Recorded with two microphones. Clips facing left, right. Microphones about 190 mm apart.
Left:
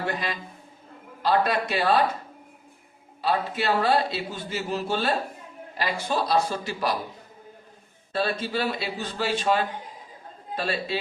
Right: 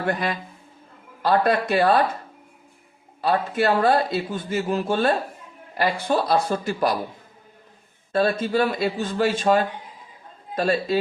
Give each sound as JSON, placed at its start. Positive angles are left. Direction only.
{"t": 0.0, "sound": "a man's voice", "side_deg": -55}
{"t": 3.2, "sound": "a man's voice", "side_deg": -50}
{"t": 8.1, "sound": "a man's voice", "side_deg": -50}